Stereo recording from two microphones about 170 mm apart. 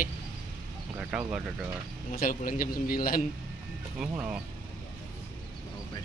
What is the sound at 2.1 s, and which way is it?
A man's voice, 55° left (ahead or behind).